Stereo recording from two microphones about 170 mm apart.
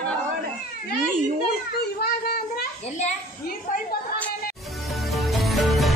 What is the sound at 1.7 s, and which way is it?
Children playing, 70° left (ahead or behind).